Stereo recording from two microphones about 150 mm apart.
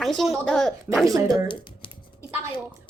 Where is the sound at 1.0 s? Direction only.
20° right (ahead or behind).